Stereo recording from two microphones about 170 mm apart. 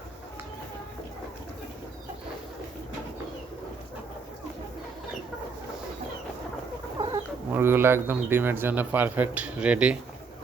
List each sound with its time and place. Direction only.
7.0 s chicken: 25° right (ahead or behind)
7.5 s a man's voice: 10° right (ahead or behind)